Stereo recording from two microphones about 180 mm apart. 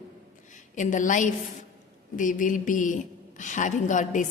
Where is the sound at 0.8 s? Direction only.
45° left (ahead or behind).